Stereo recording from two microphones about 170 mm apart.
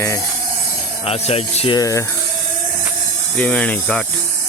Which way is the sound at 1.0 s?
40° left (ahead or behind).